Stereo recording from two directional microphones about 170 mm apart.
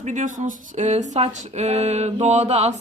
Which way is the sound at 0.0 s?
45° right (ahead or behind).